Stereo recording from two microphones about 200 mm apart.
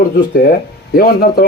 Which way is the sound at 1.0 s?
50° left (ahead or behind).